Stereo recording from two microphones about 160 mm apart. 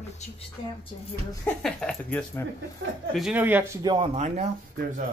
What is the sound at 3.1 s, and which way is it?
Speech, 5° right (ahead or behind).